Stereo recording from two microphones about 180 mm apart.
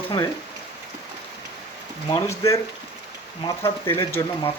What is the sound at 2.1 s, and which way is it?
Speech, 20° left (ahead or behind).